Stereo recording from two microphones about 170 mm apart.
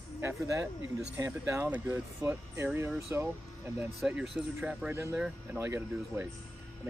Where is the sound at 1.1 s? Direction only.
15° right (ahead or behind).